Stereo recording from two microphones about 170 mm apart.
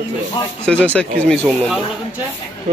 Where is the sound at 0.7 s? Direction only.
5° left (ahead or behind).